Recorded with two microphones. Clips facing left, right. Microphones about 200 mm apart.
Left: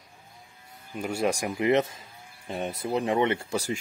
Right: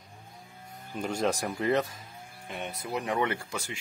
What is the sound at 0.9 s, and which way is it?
Speech, 10° left (ahead or behind).